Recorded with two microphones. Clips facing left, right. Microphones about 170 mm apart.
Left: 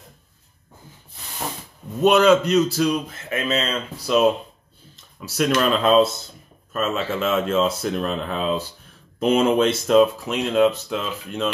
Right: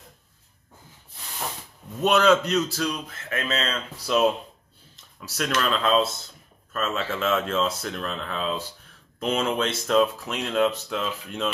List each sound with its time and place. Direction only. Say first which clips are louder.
2.0 s a man's voice: left 4 dB; 5° left (ahead or behind)